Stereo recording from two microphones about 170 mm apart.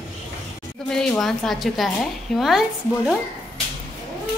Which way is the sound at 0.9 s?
5° left (ahead or behind).